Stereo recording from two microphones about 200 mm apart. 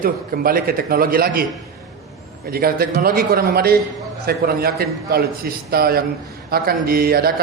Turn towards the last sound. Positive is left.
turn(degrees=-50)  # may be behind; listen again after turning